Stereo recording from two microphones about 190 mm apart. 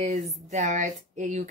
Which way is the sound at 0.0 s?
40° right (ahead or behind).